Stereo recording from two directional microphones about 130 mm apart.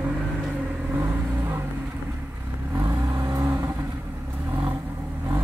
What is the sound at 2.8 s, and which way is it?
Vehicle, 30° right (ahead or behind).